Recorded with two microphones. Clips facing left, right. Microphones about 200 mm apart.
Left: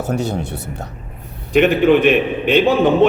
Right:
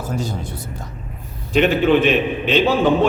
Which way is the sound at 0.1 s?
70° left (ahead or behind).